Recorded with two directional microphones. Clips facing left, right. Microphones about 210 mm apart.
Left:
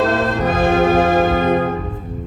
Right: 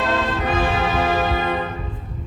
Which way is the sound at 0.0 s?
45° left (ahead or behind).